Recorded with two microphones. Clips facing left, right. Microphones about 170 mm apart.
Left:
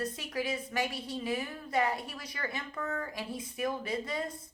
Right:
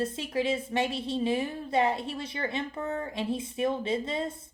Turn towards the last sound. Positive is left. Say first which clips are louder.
# right 5 dB
turn(degrees=-25)  # may be behind; listen again after turning